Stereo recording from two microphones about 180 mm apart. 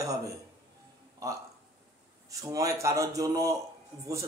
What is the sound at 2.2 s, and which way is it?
A man's voice, 20° right (ahead or behind).